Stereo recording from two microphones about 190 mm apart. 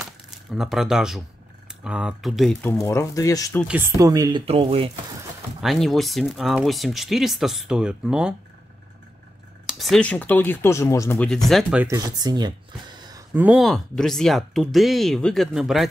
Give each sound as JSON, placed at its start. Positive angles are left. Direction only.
{"t": 0.0, "sound": "a sound", "side_deg": 0}
{"t": 1.9, "sound": "speech", "side_deg": -5}
{"t": 2.8, "sound": "speech", "side_deg": 15}
{"t": 3.6, "sound": "speech", "side_deg": -10}
{"t": 4.5, "sound": "speech", "side_deg": -30}
{"t": 5.6, "sound": "speech", "side_deg": 0}
{"t": 9.7, "sound": "speech", "side_deg": 0}
{"t": 11.9, "sound": "speech", "side_deg": -20}
{"t": 13.3, "sound": "speech", "side_deg": -5}